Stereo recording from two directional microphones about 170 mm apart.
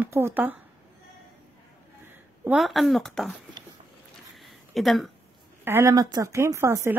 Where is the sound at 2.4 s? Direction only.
Centre (ahead or behind).